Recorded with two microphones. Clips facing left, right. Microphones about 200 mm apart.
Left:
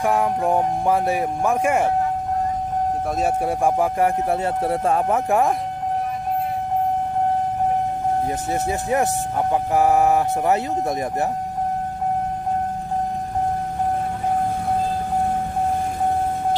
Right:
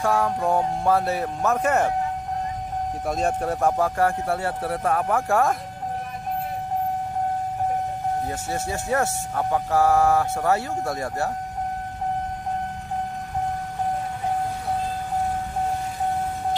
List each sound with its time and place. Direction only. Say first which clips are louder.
0.0 s speech: left 2 dB; 15° left (ahead or behind)
3.2 s speech: left 1 dB; 10° left (ahead or behind)
8.6 s speech: left 2 dB; 15° left (ahead or behind)